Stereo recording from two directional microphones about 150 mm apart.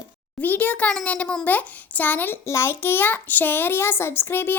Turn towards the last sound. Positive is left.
turn(degrees=15)  # may be behind; listen again after turning